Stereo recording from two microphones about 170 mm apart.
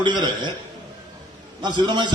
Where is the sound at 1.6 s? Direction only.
25° right (ahead or behind).